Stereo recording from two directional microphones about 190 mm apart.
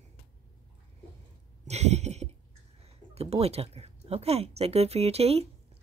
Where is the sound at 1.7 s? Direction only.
35° right (ahead or behind).